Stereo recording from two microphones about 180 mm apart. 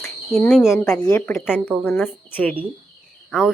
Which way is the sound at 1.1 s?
15° left (ahead or behind).